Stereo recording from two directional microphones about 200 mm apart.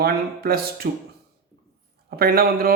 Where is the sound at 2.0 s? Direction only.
50° right (ahead or behind).